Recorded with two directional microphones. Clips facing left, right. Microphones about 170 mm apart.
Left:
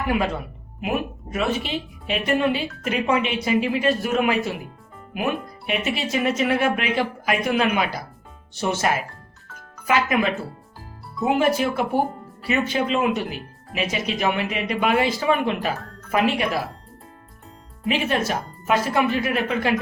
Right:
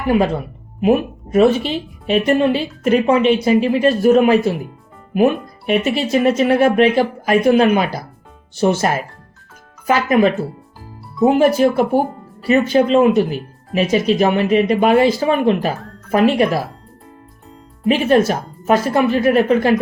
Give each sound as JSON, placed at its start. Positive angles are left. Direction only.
{"t": 0.8, "sound": "speech", "side_deg": -35}
{"t": 17.8, "sound": "speech", "side_deg": -40}